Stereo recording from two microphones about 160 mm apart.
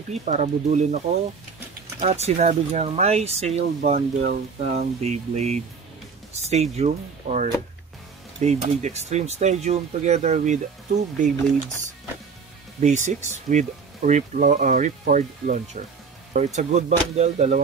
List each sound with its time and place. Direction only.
0.1 s speech: 45° right (ahead or behind)
12.8 s speech: 50° right (ahead or behind)